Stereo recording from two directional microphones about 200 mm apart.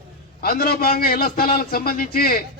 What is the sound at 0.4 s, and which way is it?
Speech, 50° left (ahead or behind).